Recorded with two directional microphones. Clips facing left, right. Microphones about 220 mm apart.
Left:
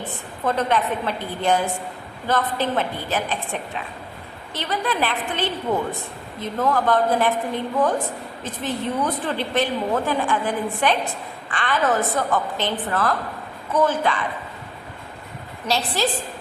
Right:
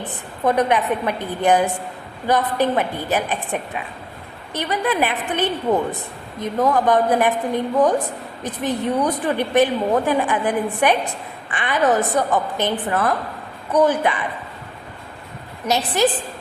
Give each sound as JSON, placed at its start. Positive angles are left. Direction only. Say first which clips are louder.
{"t": 0.1, "sound": "a woman's voice", "louder": "right 5 dB", "side_deg": -15}
{"t": 15.6, "sound": "a woman's voice", "louder": "right 4 dB", "side_deg": -20}